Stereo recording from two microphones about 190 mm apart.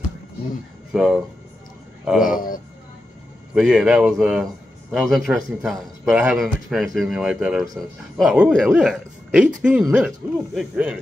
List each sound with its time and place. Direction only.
0.9 s speech: 5° right (ahead or behind)
2.2 s speech: 45° left (ahead or behind)
3.5 s speech: 5° right (ahead or behind)